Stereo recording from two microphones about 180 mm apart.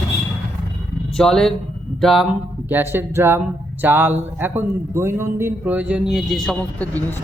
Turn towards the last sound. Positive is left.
turn(degrees=10)  # may be behind; listen again after turning